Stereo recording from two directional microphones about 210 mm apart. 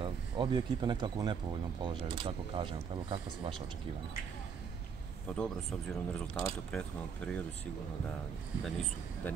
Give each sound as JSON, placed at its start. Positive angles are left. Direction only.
{"t": 0.0, "sound": "speech", "side_deg": -20}
{"t": 5.3, "sound": "speech", "side_deg": 5}
{"t": 8.6, "sound": "speech", "side_deg": 0}